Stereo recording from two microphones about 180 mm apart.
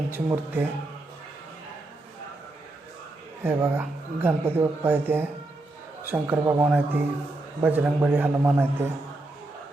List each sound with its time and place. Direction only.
0.1 s speech: 10° right (ahead or behind)
3.4 s speech: 10° right (ahead or behind)